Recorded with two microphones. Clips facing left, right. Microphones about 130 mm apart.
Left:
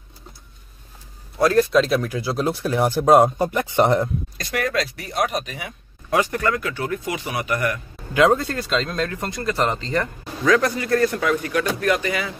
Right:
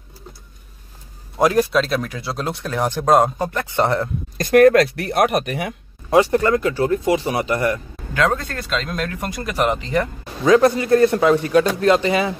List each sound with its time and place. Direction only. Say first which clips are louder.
1.4 s speech: right 1 dB; 10° right (ahead or behind)
1.7 s speech: left 2 dB; centre (ahead or behind); by 4.1 s 15° left (ahead or behind)
4.4 s speech: right 13 dB; 50° right (ahead or behind)
6.0 s speech: right 6 dB; 25° right (ahead or behind)
8.1 s speech: left 3 dB; 10° left (ahead or behind); by 10.0 s 15° right (ahead or behind)
10.4 s speech: right 5 dB; 25° right (ahead or behind)